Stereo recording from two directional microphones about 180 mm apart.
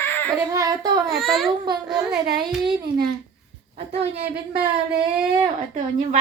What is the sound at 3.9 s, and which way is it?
Speech, 35° right (ahead or behind).